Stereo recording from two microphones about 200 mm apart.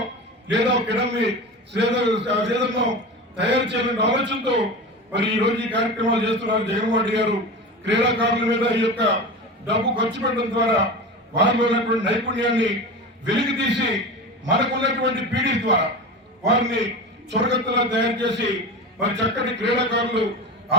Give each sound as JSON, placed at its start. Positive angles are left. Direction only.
{"t": 0.5, "sound": "a man's voice", "side_deg": -60}